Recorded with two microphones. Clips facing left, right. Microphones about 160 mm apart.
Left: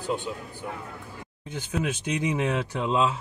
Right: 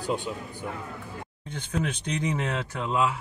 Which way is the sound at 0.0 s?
15° right (ahead or behind).